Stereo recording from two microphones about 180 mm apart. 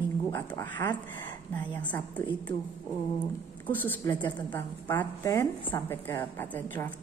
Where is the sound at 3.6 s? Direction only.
10° left (ahead or behind).